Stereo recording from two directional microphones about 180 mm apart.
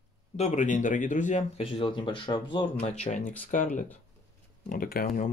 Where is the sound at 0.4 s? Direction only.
40° left (ahead or behind).